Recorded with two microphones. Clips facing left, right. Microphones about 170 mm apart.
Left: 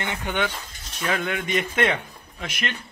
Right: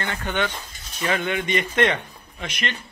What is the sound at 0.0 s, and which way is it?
A man's voice, 15° left (ahead or behind).